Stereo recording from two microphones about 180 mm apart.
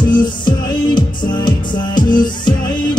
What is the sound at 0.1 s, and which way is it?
Music, 25° left (ahead or behind).